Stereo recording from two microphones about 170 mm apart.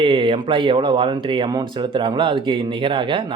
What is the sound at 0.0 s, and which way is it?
Speech, 30° right (ahead or behind).